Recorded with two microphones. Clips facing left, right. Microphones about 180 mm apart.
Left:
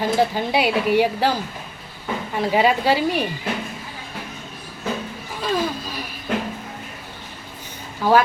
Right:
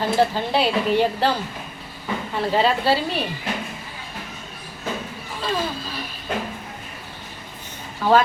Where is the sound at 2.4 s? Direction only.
10° left (ahead or behind).